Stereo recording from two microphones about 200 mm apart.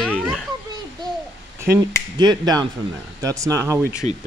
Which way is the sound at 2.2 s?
20° right (ahead or behind).